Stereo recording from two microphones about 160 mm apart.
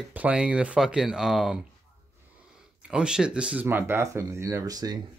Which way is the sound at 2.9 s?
5° right (ahead or behind).